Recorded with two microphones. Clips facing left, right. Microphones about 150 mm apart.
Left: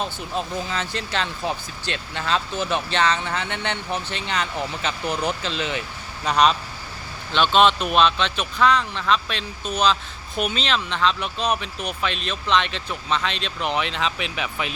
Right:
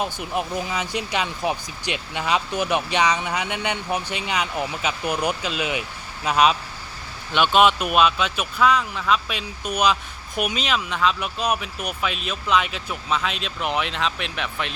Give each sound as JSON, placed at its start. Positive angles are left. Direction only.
{"t": 0.0, "sound": "speech", "side_deg": -15}